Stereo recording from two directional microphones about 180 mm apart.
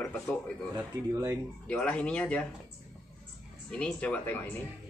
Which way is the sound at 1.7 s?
5° left (ahead or behind).